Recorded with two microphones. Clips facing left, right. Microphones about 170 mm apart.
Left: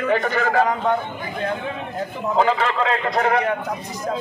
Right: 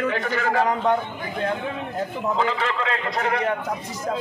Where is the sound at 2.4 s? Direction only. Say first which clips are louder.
Left 8 dB; 55° left (ahead or behind).